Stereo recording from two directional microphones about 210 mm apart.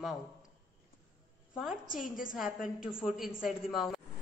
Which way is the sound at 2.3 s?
Centre (ahead or behind).